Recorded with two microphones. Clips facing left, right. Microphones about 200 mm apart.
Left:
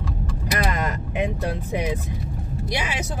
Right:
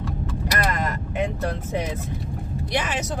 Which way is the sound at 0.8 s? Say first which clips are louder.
Left 1 dB; 15° left (ahead or behind).